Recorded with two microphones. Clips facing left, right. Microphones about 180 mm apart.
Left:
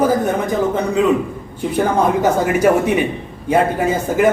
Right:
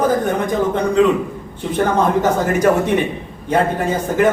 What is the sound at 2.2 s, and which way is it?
Speech, 10° left (ahead or behind).